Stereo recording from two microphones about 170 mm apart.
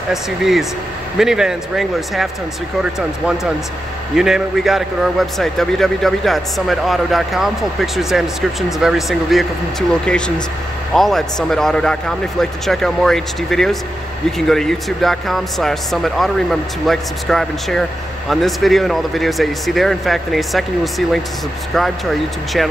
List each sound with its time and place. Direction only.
0.1 s a man's voice: centre (ahead or behind)